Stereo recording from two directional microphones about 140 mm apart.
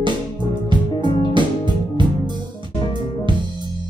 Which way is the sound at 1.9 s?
30° right (ahead or behind).